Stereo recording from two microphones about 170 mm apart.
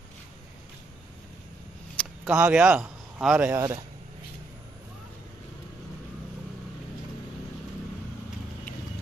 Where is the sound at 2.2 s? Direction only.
5° right (ahead or behind).